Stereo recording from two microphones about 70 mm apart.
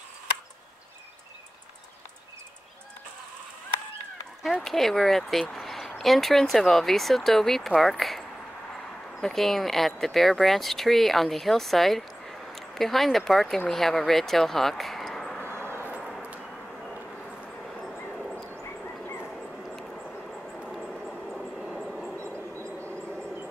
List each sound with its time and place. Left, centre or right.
4.4 s speech: centre
15.4 s vehicle: right
20.3 s vehicle: centre